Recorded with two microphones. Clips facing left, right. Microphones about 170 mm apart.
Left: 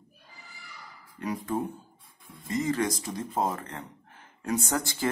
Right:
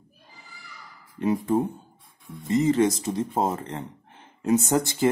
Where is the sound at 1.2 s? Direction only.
25° right (ahead or behind).